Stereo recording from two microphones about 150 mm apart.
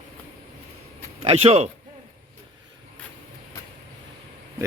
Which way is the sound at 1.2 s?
40° right (ahead or behind).